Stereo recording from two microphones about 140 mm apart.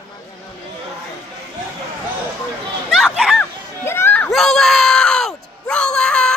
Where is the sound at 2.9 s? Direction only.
Centre (ahead or behind).